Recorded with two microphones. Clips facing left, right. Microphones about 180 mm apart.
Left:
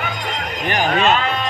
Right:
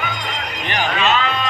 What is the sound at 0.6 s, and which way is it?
Speech, 45° left (ahead or behind).